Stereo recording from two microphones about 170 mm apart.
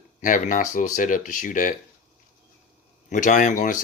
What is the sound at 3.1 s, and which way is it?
Speech, 50° left (ahead or behind).